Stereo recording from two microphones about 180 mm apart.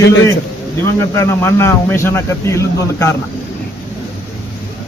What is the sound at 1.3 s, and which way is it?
A man's voice, 15° left (ahead or behind).